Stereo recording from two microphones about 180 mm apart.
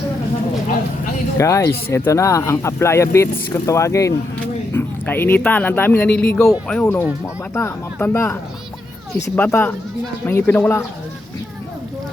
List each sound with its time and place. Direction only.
1.4 s speech: 15° left (ahead or behind)